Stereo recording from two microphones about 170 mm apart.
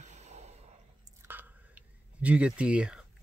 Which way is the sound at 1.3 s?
10° right (ahead or behind).